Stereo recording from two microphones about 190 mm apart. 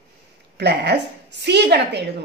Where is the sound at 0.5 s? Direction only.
60° right (ahead or behind).